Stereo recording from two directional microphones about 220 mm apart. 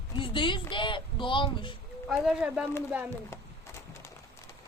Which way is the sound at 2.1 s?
5° right (ahead or behind).